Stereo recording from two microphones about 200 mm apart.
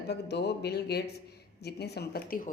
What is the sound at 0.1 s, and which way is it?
Speech, 55° left (ahead or behind).